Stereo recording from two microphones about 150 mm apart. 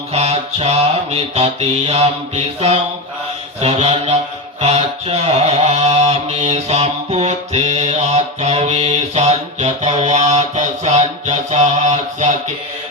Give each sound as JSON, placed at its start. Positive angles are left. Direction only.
{"t": 0.1, "sound": "mantra", "side_deg": -45}